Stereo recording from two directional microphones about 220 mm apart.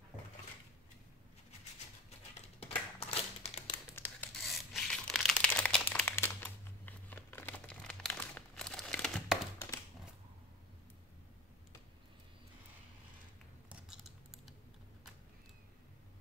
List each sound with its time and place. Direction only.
3.0 s crumpling: 25° left (ahead or behind)
3.9 s tearing: 10° left (ahead or behind)
13.7 s a sound: centre (ahead or behind)